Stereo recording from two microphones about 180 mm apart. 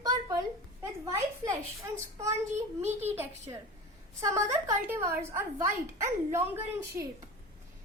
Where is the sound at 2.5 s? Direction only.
40° right (ahead or behind).